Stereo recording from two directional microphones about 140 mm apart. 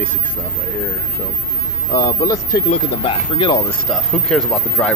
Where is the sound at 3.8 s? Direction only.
5° left (ahead or behind).